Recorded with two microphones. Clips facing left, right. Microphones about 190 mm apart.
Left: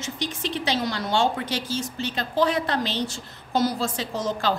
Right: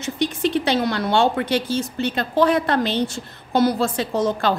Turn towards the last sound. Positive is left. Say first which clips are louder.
# right 6 dB
turn(degrees=-60)  # may be behind; listen again after turning